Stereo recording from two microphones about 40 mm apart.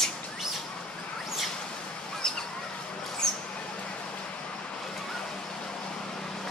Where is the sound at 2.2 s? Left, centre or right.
Centre.